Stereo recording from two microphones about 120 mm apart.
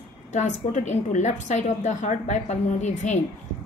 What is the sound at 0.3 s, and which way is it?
A woman's voice, 90° left.